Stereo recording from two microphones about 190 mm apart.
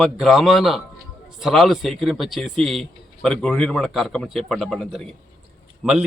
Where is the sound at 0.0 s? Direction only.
Centre (ahead or behind).